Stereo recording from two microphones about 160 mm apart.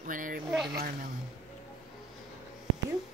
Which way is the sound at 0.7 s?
70° right (ahead or behind).